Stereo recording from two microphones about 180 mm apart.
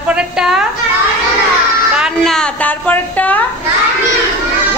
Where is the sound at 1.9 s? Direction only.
Centre (ahead or behind).